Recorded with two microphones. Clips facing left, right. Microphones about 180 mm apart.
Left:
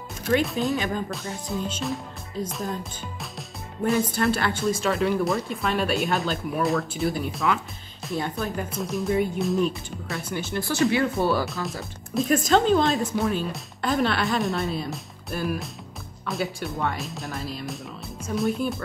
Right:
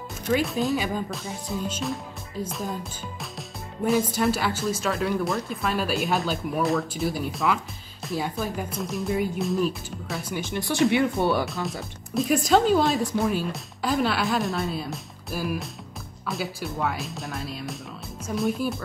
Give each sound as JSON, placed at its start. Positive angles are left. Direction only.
{"t": 0.3, "sound": "speech", "side_deg": 0}
{"t": 10.3, "sound": "speech", "side_deg": -15}
{"t": 11.4, "sound": "speech", "side_deg": 0}